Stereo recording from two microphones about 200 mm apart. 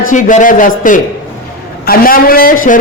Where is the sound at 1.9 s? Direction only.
45° left (ahead or behind).